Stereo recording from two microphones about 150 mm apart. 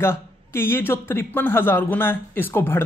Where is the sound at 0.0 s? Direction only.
15° left (ahead or behind).